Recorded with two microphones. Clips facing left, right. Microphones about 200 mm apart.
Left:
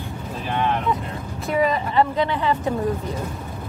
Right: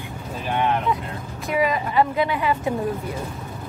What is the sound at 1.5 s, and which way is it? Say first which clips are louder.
Speech: left 1 dB; 10° right (ahead or behind).